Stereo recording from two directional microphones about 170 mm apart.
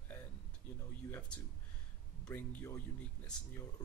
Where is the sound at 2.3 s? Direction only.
15° left (ahead or behind).